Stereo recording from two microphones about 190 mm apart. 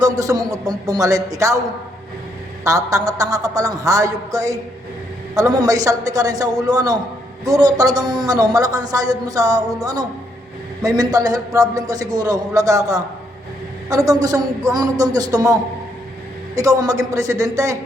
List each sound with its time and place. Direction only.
0.0 s a man's voice: 20° right (ahead or behind)
2.6 s a woman's voice: 20° right (ahead or behind)
16.6 s a woman's voice: 20° right (ahead or behind)